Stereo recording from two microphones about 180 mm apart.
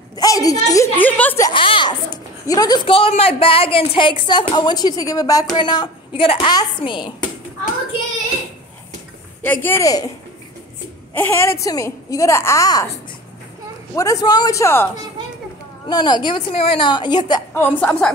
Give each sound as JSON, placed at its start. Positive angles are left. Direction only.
{"t": 0.1, "sound": "a sound", "side_deg": 20}
{"t": 1.4, "sound": "a child's voice", "side_deg": 30}
{"t": 9.4, "sound": "a woman's voice", "side_deg": 10}
{"t": 11.1, "sound": "a woman's voice", "side_deg": 15}
{"t": 13.9, "sound": "a woman's voice", "side_deg": 20}
{"t": 15.9, "sound": "a child's voice", "side_deg": 25}
{"t": 17.7, "sound": "a woman's voice", "side_deg": 5}